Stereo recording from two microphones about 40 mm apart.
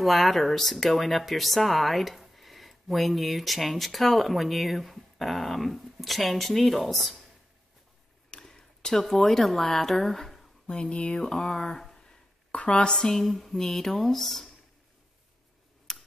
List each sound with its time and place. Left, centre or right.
0.0 s speech: centre
8.3 s a sound: centre
9.1 s speech: centre
10.7 s speech: centre
12.4 s a woman's voice: left
12.9 s speech: centre
15.9 s tick-tock: centre